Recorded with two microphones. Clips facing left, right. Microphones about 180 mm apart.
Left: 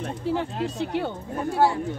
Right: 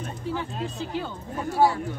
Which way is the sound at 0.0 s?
70° left (ahead or behind).